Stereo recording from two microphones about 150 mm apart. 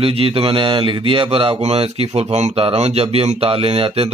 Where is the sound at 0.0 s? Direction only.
40° right (ahead or behind).